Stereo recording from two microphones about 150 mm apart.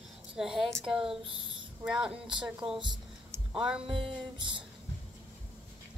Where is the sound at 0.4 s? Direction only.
Centre (ahead or behind).